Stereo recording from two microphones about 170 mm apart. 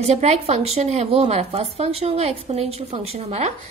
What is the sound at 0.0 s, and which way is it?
Speech, 40° right (ahead or behind).